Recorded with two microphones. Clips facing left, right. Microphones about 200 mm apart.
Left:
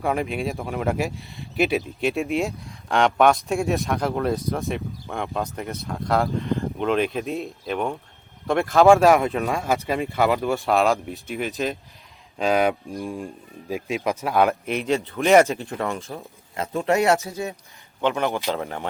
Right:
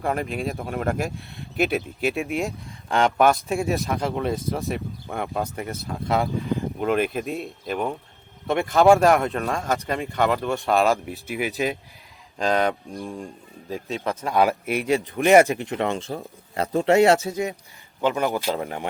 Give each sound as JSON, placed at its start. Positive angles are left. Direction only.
{"t": 0.0, "sound": "speech", "side_deg": 0}
{"t": 12.4, "sound": "speech", "side_deg": 5}
{"t": 13.1, "sound": "speech", "side_deg": 0}
{"t": 13.7, "sound": "speech", "side_deg": 10}
{"t": 17.2, "sound": "speech", "side_deg": -15}
{"t": 18.0, "sound": "speech", "side_deg": -5}